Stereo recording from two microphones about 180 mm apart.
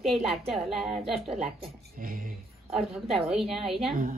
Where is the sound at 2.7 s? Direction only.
Centre (ahead or behind).